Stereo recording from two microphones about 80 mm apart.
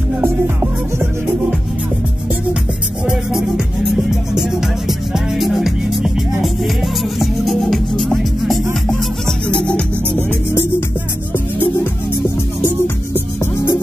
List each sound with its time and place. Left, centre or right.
0.1 s music: right
3.1 s music: centre
9.2 s music: centre
11.3 s music: left